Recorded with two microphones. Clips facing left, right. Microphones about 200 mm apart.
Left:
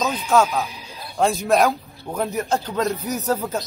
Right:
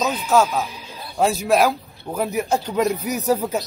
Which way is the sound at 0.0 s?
5° right (ahead or behind).